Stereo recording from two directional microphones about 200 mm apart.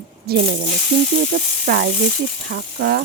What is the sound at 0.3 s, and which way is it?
Speech, 50° right (ahead or behind).